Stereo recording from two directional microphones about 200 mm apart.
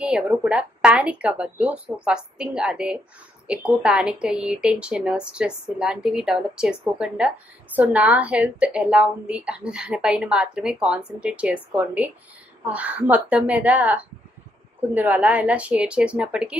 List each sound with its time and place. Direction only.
0.1 s a woman's voice: 5° right (ahead or behind)